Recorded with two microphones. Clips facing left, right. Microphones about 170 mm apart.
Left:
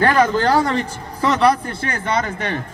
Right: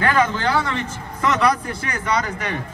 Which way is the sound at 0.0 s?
40° left (ahead or behind).